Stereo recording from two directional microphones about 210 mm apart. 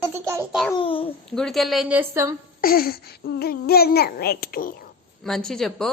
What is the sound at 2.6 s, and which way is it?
A child's voice, 45° left (ahead or behind).